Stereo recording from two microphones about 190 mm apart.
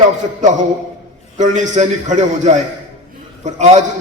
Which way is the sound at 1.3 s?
40° right (ahead or behind).